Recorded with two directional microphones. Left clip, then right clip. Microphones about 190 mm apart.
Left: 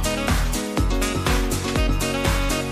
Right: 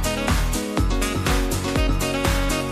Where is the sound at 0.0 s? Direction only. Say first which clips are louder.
Even; centre (ahead or behind).